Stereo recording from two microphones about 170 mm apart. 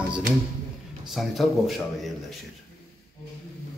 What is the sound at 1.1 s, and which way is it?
Speech, centre (ahead or behind).